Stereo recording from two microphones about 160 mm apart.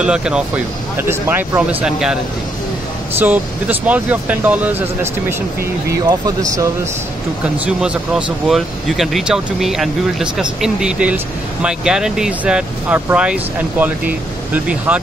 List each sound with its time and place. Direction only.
0.0 s speech: 5° right (ahead or behind)
1.0 s speech: 15° right (ahead or behind)
3.2 s speech: 10° right (ahead or behind)
5.9 s speech: 25° right (ahead or behind)
7.4 s speech: 5° right (ahead or behind)